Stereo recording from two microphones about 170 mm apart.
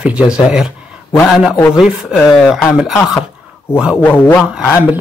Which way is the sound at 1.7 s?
Centre (ahead or behind).